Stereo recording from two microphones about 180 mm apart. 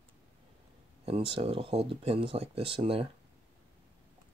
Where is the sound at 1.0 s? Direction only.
30° right (ahead or behind).